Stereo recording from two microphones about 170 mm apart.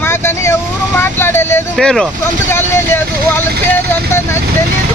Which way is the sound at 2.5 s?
15° left (ahead or behind).